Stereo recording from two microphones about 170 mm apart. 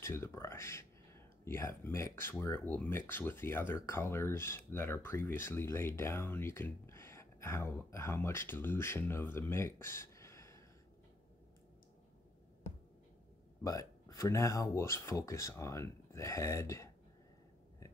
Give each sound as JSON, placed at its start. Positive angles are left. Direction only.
{"t": 0.0, "sound": "speech", "side_deg": 15}
{"t": 13.7, "sound": "speech", "side_deg": 20}